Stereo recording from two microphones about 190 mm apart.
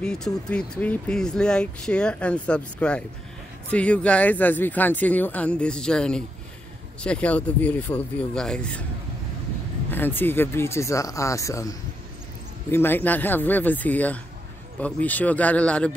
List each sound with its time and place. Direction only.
0.0 s speech: 5° left (ahead or behind)
9.8 s speech: 10° left (ahead or behind)
12.7 s speech: 10° left (ahead or behind)